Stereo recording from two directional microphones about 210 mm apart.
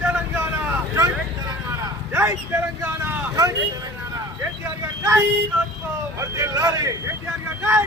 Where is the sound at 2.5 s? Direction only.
10° right (ahead or behind).